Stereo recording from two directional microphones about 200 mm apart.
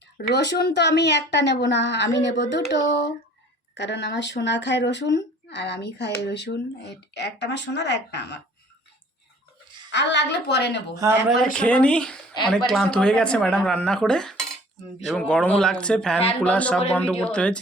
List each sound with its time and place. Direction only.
0.2 s speech: 50° left (ahead or behind)
9.9 s speech: 60° left (ahead or behind)
11.5 s speech: 5° left (ahead or behind)